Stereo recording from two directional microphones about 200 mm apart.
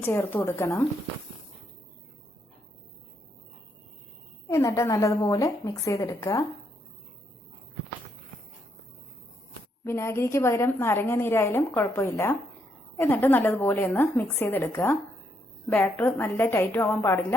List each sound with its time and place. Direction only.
0.0 s a woman's voice: 10° left (ahead or behind)
4.4 s a woman's voice: 15° left (ahead or behind)
9.8 s a woman's voice: 15° left (ahead or behind)